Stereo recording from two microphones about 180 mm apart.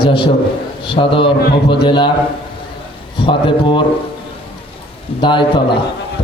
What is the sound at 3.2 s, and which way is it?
Speech, 30° left (ahead or behind).